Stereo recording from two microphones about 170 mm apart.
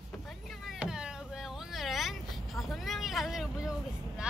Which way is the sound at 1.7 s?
Centre (ahead or behind).